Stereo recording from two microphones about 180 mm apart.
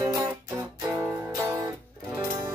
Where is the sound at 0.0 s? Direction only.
15° right (ahead or behind).